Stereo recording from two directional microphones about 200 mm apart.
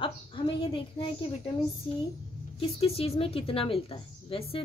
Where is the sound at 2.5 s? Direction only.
30° left (ahead or behind).